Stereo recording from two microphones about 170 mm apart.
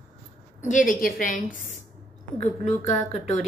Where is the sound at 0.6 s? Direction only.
50° left (ahead or behind).